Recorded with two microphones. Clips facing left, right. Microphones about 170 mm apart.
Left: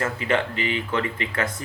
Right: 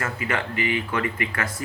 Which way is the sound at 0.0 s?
25° left (ahead or behind).